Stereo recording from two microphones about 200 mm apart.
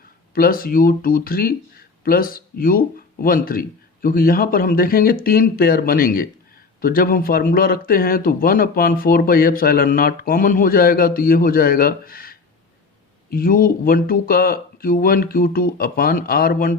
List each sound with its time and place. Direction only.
0.3 s speech: 45° left (ahead or behind)